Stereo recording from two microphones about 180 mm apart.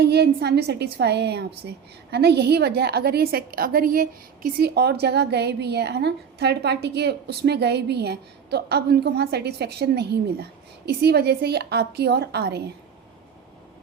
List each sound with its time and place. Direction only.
0.0 s a woman's voice: 65° right (ahead or behind)